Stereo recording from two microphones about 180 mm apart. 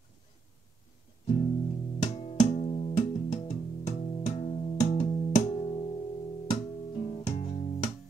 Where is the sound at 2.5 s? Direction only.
40° left (ahead or behind).